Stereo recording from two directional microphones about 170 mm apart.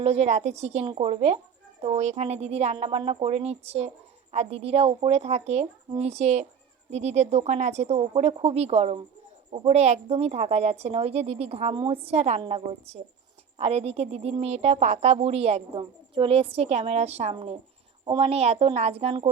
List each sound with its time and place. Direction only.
0.0 s a woman's voice: 40° right (ahead or behind)